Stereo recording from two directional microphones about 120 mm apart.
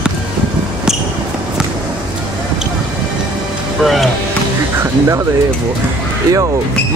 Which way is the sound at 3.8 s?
Centre (ahead or behind).